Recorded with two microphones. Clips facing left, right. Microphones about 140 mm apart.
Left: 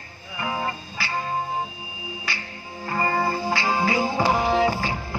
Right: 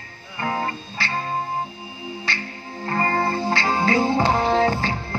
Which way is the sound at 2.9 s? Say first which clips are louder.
Right 1 dB; 10° left (ahead or behind).